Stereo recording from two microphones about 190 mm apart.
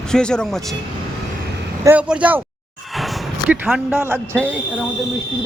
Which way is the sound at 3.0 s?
Centre (ahead or behind).